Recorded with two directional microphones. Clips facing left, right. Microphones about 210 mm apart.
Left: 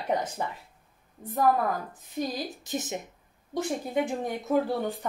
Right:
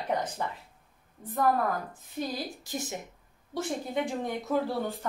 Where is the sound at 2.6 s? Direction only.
20° left (ahead or behind).